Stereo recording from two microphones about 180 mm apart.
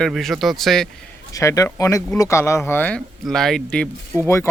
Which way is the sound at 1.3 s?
15° left (ahead or behind).